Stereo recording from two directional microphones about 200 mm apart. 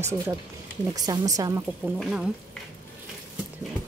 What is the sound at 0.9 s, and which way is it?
Speech, 20° right (ahead or behind).